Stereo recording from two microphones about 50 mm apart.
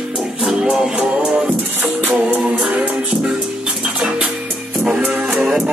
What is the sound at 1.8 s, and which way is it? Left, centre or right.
Music, right.